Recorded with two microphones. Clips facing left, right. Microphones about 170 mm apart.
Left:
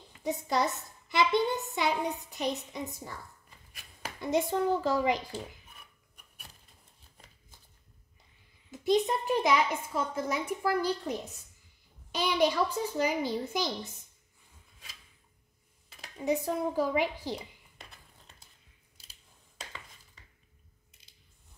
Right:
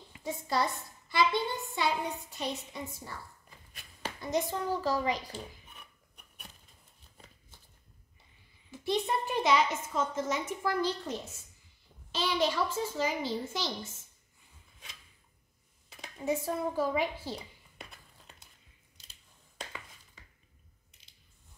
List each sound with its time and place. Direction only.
0.2 s a woman's voice: 20° left (ahead or behind)
4.2 s a woman's voice: 25° left (ahead or behind)
8.7 s a woman's voice: 15° left (ahead or behind)
16.2 s a woman's voice: 15° left (ahead or behind)